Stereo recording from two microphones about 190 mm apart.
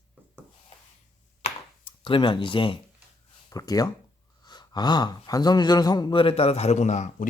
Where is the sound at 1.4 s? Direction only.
30° left (ahead or behind).